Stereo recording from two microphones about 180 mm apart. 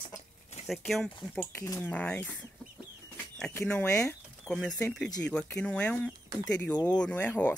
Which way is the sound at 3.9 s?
15° left (ahead or behind).